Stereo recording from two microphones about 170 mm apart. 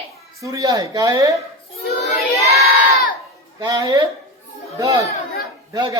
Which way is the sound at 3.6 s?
20° right (ahead or behind).